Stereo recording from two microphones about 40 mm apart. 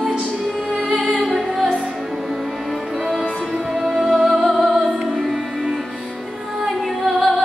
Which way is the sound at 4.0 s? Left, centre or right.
Centre.